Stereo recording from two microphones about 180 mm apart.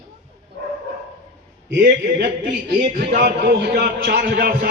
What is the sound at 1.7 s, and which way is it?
A man's voice, 55° right (ahead or behind).